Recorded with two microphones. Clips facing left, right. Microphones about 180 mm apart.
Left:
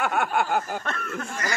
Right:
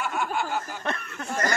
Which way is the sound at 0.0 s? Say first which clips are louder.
Left 4 dB; 60° left (ahead or behind).